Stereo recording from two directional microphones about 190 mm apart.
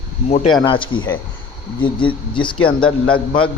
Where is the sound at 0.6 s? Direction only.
25° left (ahead or behind).